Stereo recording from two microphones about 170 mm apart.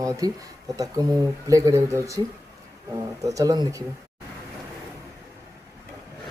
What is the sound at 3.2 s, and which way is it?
Speech, 20° right (ahead or behind).